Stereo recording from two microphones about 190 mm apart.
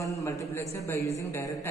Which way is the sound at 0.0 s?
15° left (ahead or behind).